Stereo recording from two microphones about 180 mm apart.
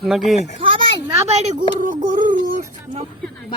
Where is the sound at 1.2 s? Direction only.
40° right (ahead or behind).